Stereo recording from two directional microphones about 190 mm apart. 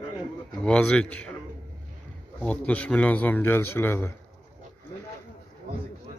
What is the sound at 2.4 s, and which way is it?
A man's voice, 5° left (ahead or behind).